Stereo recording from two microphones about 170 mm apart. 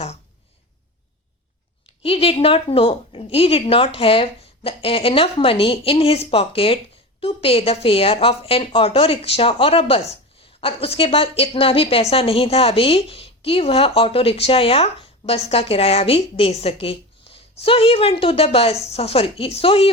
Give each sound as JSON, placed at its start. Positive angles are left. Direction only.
{"t": 2.0, "sound": "a woman's voice", "side_deg": 35}